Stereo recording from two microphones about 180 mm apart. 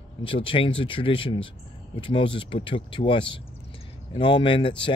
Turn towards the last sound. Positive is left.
turn(degrees=30)  # may be behind; listen again after turning